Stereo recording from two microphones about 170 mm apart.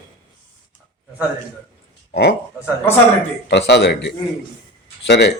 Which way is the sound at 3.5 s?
80° left.